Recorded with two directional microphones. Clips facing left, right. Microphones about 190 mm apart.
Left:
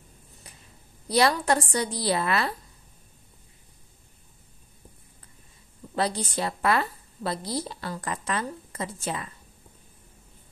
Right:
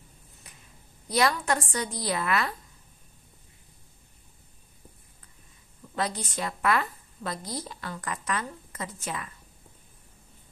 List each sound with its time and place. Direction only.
1.0 s a woman's voice: 30° left (ahead or behind)
5.9 s a woman's voice: 30° left (ahead or behind)